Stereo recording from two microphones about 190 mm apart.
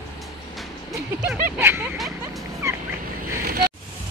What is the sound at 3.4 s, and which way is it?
Vehicle, 55° right (ahead or behind).